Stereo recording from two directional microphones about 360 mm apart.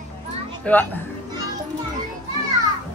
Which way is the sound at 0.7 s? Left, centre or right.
Centre.